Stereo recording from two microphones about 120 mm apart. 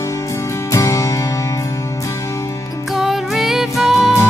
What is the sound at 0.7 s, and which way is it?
Music, 25° left (ahead or behind).